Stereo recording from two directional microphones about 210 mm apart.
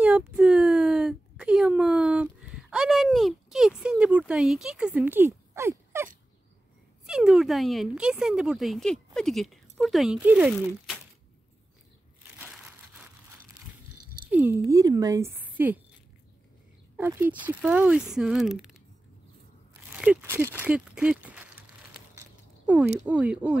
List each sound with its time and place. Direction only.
0.0 s a sound: 5° right (ahead or behind)
7.1 s speech: centre (ahead or behind)
12.4 s crushing: 5° right (ahead or behind)
14.3 s a woman's voice: 10° right (ahead or behind)
16.9 s speech: 10° right (ahead or behind)
20.0 s speech: 5° right (ahead or behind)
22.9 s a woman's voice: 5° right (ahead or behind)